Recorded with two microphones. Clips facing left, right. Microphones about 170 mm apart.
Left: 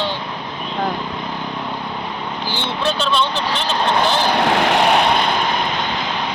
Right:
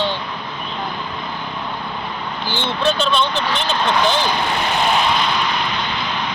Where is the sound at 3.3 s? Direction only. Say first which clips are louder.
Even; 35° left (ahead or behind).